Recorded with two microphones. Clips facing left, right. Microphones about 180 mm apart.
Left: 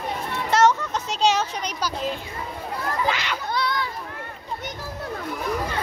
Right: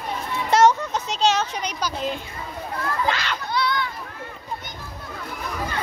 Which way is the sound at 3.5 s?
45° left (ahead or behind).